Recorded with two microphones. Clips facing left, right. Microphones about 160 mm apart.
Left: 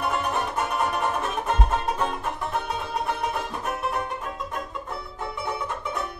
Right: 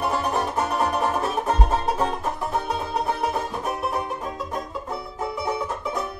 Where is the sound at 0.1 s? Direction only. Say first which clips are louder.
Right 3 dB; 35° right (ahead or behind).